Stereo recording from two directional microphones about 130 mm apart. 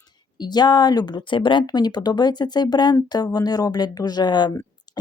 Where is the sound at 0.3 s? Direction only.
35° left (ahead or behind).